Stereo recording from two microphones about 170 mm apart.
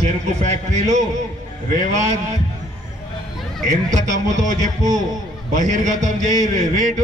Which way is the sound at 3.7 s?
45° right (ahead or behind).